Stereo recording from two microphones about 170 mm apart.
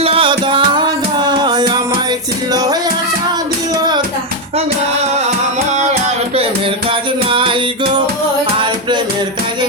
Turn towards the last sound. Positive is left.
turn(degrees=-30)  # may be behind; listen again after turning